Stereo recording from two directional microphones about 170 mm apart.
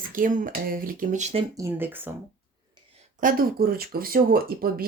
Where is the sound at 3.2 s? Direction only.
60° right (ahead or behind).